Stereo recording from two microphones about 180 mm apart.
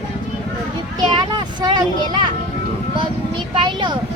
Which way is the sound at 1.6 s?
25° right (ahead or behind).